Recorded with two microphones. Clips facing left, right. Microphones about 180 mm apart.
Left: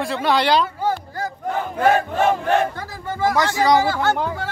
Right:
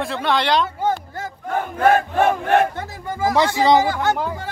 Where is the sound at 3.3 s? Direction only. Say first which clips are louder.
Right 3 dB; 20° right (ahead or behind).